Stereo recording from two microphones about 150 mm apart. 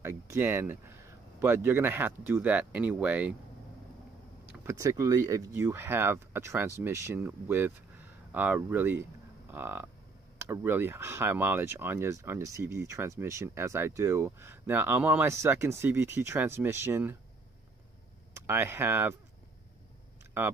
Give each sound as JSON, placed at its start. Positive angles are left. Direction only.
{"t": 0.0, "sound": "speech", "side_deg": -15}
{"t": 4.5, "sound": "speech", "side_deg": -20}
{"t": 18.3, "sound": "speech", "side_deg": -15}
{"t": 20.4, "sound": "speech", "side_deg": -15}